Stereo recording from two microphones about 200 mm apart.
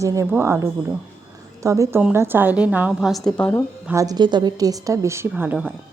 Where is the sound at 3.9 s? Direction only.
15° right (ahead or behind).